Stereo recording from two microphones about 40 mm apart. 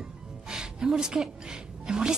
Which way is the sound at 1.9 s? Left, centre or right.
Centre.